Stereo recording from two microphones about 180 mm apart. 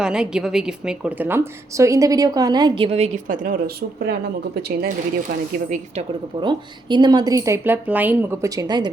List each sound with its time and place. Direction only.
0.0 s a woman's voice: 5° right (ahead or behind); by 4.2 s 60° right (ahead or behind)
5.6 s a woman's voice: 45° right (ahead or behind)
6.4 s a woman's voice: 25° right (ahead or behind)